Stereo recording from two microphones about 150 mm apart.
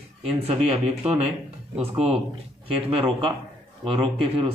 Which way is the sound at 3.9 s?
40° right (ahead or behind).